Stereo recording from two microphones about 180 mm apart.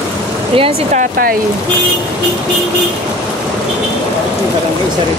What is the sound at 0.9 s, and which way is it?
Speech, 50° right (ahead or behind).